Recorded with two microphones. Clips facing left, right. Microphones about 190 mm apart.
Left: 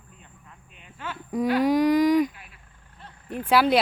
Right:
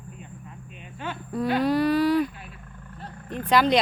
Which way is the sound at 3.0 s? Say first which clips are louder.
Right 7 dB; 45° right (ahead or behind).